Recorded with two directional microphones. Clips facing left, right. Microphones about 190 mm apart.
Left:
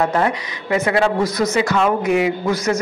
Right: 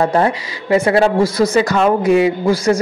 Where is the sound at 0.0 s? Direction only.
30° right (ahead or behind).